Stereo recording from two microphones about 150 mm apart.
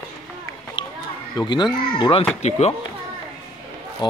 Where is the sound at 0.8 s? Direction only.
30° left (ahead or behind).